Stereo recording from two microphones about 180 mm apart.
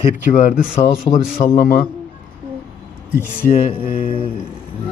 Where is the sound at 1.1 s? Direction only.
30° left (ahead or behind).